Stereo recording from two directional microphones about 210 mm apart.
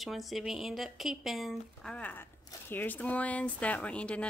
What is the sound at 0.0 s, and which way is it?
Speech, centre (ahead or behind).